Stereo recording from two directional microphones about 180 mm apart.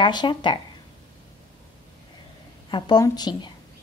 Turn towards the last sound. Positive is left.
turn(degrees=25)  # may be behind; listen again after turning